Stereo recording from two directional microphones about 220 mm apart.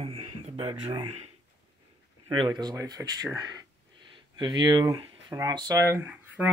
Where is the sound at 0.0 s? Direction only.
25° right (ahead or behind).